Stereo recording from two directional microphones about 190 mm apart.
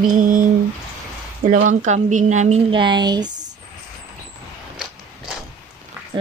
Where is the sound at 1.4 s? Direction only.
45° right (ahead or behind); by 3.3 s 20° right (ahead or behind).